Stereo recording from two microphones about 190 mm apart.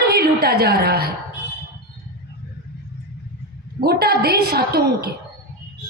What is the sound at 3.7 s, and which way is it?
A woman's voice, 55° right (ahead or behind).